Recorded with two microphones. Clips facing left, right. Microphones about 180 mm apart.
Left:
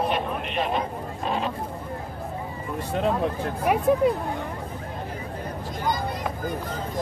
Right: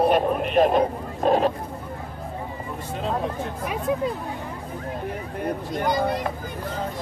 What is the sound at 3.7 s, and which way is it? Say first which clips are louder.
Speech: left 11 dB; 65° left (ahead or behind).